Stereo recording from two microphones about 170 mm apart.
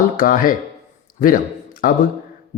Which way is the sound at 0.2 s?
55° left (ahead or behind).